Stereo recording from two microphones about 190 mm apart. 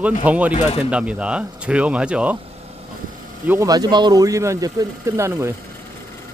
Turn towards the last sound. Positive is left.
turn(degrees=-15)  # may be behind; listen again after turning